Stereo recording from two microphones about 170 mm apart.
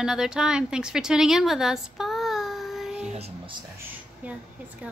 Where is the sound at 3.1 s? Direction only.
40° right (ahead or behind).